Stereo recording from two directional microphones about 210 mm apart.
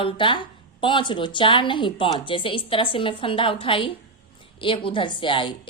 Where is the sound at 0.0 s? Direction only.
25° left (ahead or behind).